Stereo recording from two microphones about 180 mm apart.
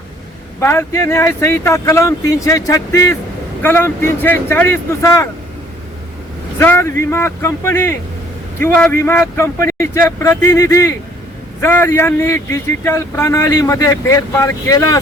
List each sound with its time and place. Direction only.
0.6 s speech: 15° left (ahead or behind)
6.6 s speech: 15° left (ahead or behind)